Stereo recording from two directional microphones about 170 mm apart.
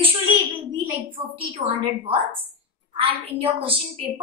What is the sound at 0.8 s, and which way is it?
A woman's voice, 30° right (ahead or behind).